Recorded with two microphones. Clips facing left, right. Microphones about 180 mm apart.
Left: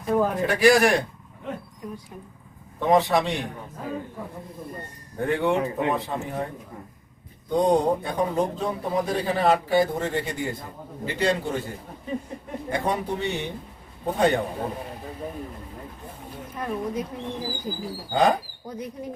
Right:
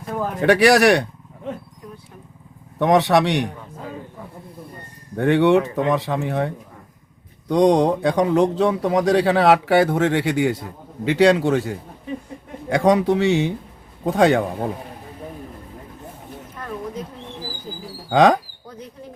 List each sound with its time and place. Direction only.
0.4 s a man's voice: 75° right (ahead or behind)
2.7 s a man's voice: 75° right (ahead or behind)
5.1 s speech: 80° right
16.6 s a sound: 10° left (ahead or behind)
18.1 s speech: 90° right
18.7 s speech: 10° left (ahead or behind)